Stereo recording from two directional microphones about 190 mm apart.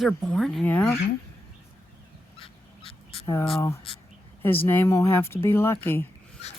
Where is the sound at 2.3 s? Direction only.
30° left (ahead or behind).